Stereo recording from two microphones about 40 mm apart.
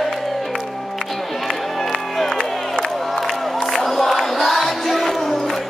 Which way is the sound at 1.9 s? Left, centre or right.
Centre.